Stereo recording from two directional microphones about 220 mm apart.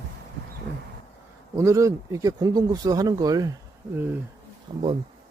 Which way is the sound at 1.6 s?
15° right (ahead or behind).